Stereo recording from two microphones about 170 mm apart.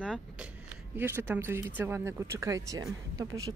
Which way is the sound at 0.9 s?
15° right (ahead or behind).